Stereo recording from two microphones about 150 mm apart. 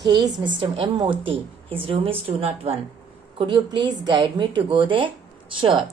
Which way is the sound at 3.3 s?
30° right (ahead or behind).